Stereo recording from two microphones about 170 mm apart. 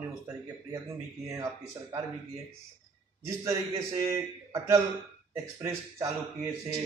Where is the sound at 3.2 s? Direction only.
15° right (ahead or behind).